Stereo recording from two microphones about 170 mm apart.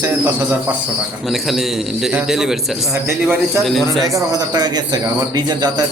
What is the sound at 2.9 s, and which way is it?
Speech, 15° right (ahead or behind).